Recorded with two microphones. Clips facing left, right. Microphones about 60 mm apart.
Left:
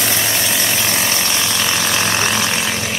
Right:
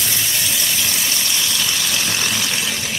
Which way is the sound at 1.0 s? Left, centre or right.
Left.